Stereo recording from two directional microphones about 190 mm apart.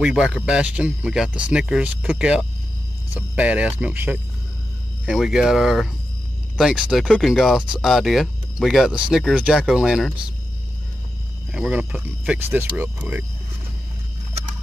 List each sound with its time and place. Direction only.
0.0 s speech: 5° right (ahead or behind)
11.5 s speech: 5° right (ahead or behind)